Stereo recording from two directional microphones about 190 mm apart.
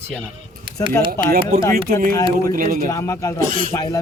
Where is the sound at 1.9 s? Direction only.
50° right (ahead or behind).